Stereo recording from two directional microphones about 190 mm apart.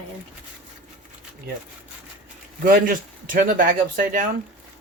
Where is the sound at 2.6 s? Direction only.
45° right (ahead or behind).